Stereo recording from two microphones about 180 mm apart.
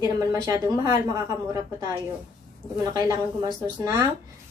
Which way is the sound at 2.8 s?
20° right (ahead or behind).